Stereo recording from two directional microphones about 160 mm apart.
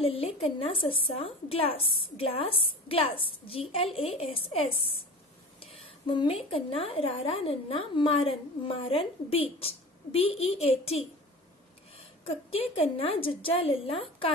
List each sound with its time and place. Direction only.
0.0 s a woman's voice: 35° left (ahead or behind)
12.3 s a woman's voice: 35° left (ahead or behind)